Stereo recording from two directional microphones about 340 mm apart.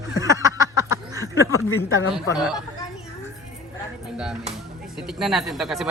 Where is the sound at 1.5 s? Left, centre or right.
Left.